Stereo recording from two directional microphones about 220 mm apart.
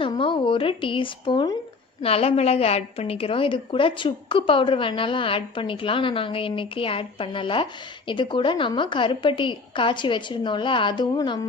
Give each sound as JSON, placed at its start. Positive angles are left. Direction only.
{"t": 0.0, "sound": "a woman's voice", "side_deg": 25}